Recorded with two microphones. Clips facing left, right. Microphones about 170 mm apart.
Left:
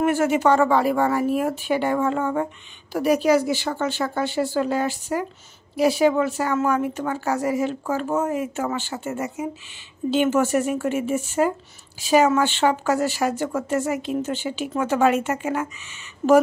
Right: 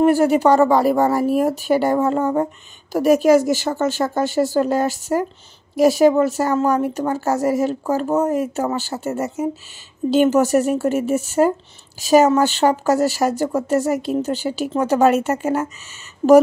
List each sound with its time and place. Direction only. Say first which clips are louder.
0.0 s a woman's voice: right 5 dB; 35° right (ahead or behind)
16.2 s speech: right 5 dB; 30° right (ahead or behind)